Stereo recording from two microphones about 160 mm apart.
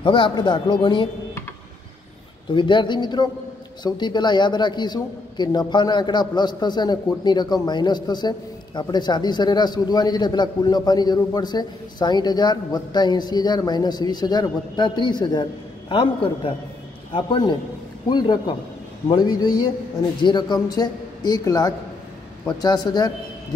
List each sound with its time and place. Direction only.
0.0 s a man's voice: 30° left (ahead or behind)
2.5 s a man's voice: 30° left (ahead or behind)